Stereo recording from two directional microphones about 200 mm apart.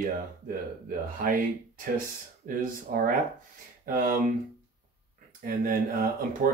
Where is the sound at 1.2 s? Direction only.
45° right (ahead or behind).